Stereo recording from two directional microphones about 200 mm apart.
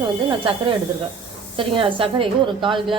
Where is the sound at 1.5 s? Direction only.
25° right (ahead or behind).